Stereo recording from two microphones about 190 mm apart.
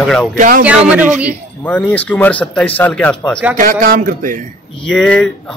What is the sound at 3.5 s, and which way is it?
Speech, 45° right (ahead or behind).